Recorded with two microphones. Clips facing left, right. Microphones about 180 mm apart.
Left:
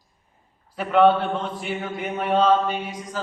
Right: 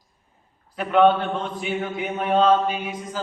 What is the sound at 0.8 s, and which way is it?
A man's voice, centre (ahead or behind).